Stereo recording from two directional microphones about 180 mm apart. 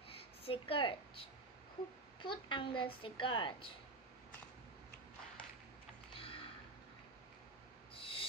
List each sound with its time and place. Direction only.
0.2 s a child's voice: 30° left (ahead or behind)
2.2 s a child's voice: 30° left (ahead or behind)
6.1 s a sound: 30° left (ahead or behind)
7.9 s owl: 30° left (ahead or behind)